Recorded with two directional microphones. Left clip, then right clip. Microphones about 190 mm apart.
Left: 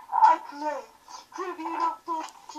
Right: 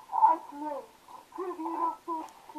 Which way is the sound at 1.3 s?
20° left (ahead or behind).